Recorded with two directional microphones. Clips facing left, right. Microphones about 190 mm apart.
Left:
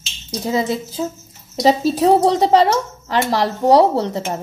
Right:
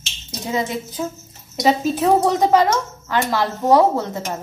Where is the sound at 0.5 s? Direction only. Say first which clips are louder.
Left 3 dB; 30° left (ahead or behind).